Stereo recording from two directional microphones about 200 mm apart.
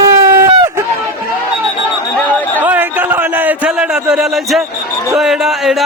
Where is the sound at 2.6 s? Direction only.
10° right (ahead or behind).